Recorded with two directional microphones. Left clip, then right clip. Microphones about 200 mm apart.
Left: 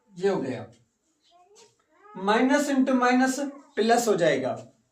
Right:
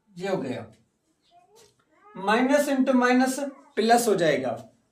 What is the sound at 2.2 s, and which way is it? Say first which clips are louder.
Speech: right 1 dB; 25° right (ahead or behind).